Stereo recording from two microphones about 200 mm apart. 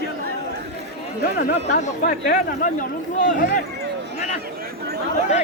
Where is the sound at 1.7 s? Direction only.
40° left (ahead or behind).